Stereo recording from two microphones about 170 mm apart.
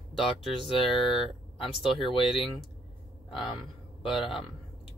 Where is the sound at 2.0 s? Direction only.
30° left (ahead or behind).